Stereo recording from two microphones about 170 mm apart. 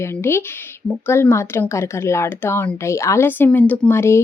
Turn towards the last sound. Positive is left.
turn(degrees=15)  # may be behind; listen again after turning